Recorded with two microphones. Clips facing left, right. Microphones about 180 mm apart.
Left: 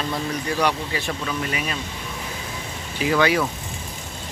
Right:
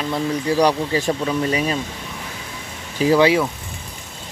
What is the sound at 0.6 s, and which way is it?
Speech, 40° right (ahead or behind).